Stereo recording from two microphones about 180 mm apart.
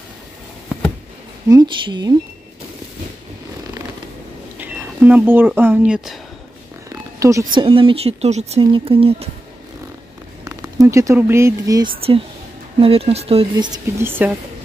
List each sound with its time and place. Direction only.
1.5 s a woman's voice: 25° right (ahead or behind)
4.6 s speech: 10° right (ahead or behind)
7.2 s speech: 15° right (ahead or behind)
7.5 s speech: 30° right (ahead or behind)
10.4 s speech: 15° right (ahead or behind)
12.8 s speech: 35° right (ahead or behind)
13.9 s a woman's voice: 10° right (ahead or behind)